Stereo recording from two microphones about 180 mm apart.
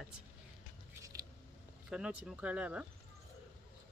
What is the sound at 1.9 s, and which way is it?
Speech, 5° right (ahead or behind).